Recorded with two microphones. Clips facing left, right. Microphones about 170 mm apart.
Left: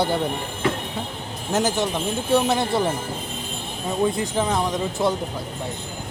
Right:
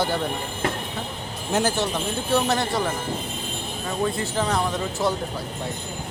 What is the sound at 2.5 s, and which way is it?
Speech, 25° left (ahead or behind).